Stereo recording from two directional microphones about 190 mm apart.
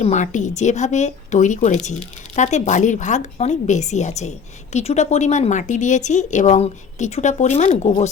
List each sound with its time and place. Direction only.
0.0 s a woman's voice: 40° left (ahead or behind)